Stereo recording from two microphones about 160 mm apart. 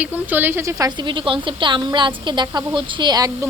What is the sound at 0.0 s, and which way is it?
A woman's voice, 10° right (ahead or behind).